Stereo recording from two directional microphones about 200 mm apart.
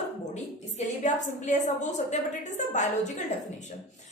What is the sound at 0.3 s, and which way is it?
A woman's voice, 35° left (ahead or behind).